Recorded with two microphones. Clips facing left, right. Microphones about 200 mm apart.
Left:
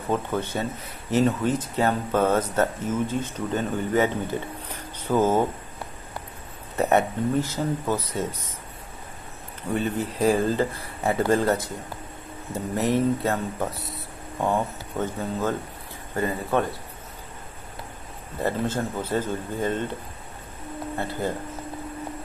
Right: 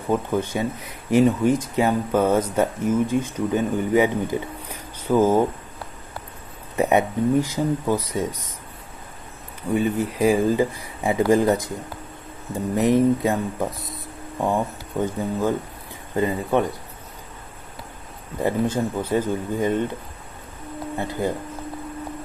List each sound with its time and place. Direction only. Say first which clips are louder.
0.1 s speech: right 4 dB; 10° right (ahead or behind)
6.8 s speech: right 2 dB; 15° right (ahead or behind)
9.7 s speech: right 4 dB; 10° right (ahead or behind)
18.4 s speech: right 4 dB; 15° right (ahead or behind)
21.0 s speech: right 3 dB; 15° right (ahead or behind)